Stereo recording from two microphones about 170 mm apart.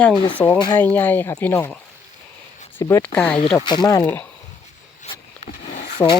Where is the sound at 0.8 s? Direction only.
10° left (ahead or behind).